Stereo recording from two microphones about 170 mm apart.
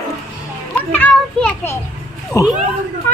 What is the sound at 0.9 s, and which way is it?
A child's voice, 10° left (ahead or behind).